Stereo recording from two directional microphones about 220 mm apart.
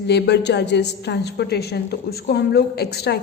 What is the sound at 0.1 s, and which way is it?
A woman's voice, 50° left (ahead or behind).